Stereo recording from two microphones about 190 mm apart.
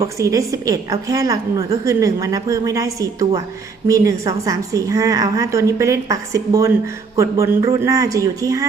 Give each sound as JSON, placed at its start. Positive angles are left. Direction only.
{"t": 0.2, "sound": "a woman's voice", "side_deg": -15}